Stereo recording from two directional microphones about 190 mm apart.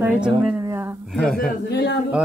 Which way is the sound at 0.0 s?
5° right (ahead or behind).